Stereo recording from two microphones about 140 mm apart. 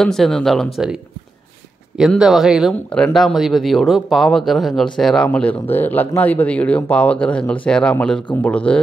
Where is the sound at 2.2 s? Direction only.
5° right (ahead or behind).